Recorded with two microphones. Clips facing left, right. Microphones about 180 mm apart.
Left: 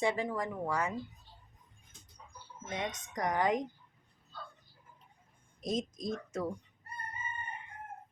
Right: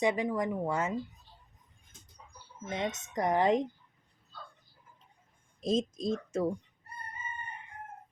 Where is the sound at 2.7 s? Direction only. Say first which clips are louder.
Right 4 dB; 25° right (ahead or behind).